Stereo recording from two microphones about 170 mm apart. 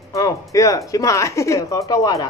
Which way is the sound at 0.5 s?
20° left (ahead or behind).